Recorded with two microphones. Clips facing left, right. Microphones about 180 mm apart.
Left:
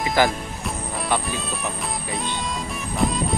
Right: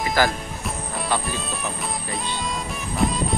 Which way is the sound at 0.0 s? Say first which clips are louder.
Left 1 dB; 20° left (ahead or behind).